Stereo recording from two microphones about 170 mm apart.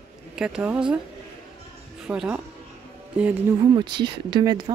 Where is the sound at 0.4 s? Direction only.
5° right (ahead or behind).